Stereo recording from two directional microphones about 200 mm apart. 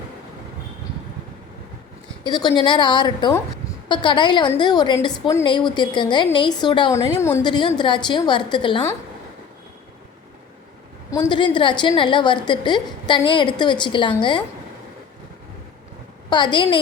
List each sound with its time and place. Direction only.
2.2 s a woman's voice: 20° left (ahead or behind)
11.1 s a woman's voice: 20° left (ahead or behind)
16.3 s a woman's voice: 25° left (ahead or behind)